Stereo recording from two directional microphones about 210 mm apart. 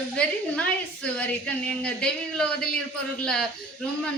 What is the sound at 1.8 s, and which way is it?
Speech, 5° left (ahead or behind).